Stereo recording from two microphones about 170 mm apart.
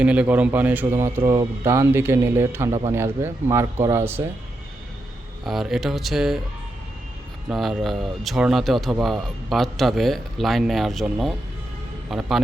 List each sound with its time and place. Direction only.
0.0 s speech: 5° right (ahead or behind)
5.5 s speech: centre (ahead or behind)
7.5 s speech: centre (ahead or behind)